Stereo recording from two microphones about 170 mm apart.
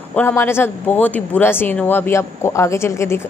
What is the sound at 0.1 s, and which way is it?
A woman's voice, 10° left (ahead or behind).